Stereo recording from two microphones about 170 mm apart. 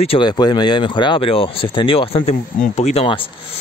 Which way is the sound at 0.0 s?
30° left (ahead or behind).